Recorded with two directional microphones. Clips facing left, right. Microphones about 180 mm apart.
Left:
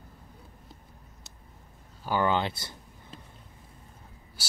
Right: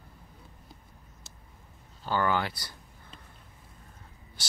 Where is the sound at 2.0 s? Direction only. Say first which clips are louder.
Left 2 dB; 20° left (ahead or behind).